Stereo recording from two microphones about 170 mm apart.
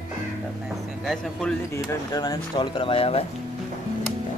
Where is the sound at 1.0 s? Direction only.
5° left (ahead or behind).